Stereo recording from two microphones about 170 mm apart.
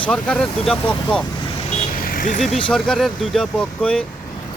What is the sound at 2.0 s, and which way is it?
Vehicle, 55° left (ahead or behind).